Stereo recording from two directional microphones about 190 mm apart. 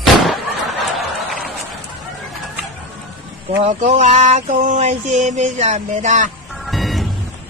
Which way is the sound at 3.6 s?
40° right (ahead or behind).